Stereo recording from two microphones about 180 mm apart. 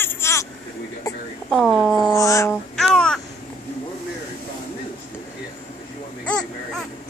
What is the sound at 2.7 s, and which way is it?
Babbling, 5° left (ahead or behind).